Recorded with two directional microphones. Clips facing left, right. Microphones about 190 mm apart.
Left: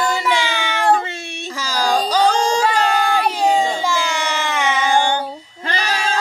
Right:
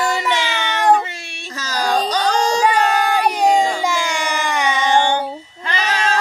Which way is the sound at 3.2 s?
10° right (ahead or behind).